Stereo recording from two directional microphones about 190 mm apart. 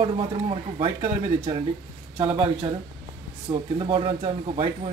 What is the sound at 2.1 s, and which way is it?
A man's voice, 25° right (ahead or behind).